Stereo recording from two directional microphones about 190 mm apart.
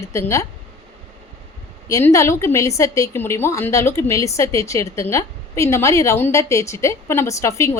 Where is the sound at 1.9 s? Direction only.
15° left (ahead or behind).